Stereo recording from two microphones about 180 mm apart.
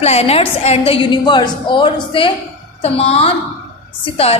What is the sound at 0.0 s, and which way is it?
A woman's voice, 35° left (ahead or behind).